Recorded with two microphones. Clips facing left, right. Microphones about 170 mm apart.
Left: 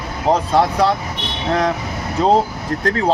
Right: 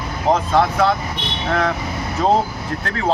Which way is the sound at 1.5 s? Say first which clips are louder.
Left 2 dB; 35° left (ahead or behind).